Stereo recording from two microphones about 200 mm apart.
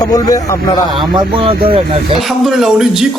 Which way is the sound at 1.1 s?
25° right (ahead or behind).